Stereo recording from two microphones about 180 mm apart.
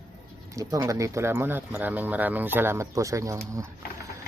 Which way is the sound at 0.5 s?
20° right (ahead or behind).